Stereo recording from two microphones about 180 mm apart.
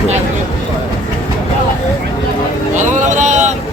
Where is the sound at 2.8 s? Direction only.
45° right (ahead or behind).